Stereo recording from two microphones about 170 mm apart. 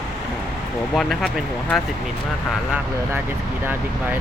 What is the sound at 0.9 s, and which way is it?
Speech, centre (ahead or behind).